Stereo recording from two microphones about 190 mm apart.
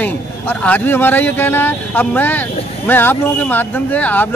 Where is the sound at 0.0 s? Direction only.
10° left (ahead or behind).